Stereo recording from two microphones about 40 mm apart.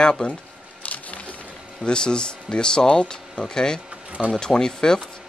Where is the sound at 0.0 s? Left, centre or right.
Left.